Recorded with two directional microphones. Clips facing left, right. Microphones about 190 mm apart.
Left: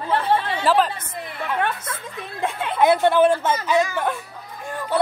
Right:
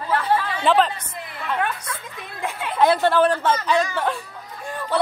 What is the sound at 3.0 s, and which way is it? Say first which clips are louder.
A woman's voice: left 1 dB; 20° left (ahead or behind).